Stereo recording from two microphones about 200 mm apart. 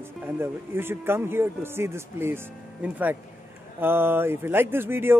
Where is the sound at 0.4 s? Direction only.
10° right (ahead or behind).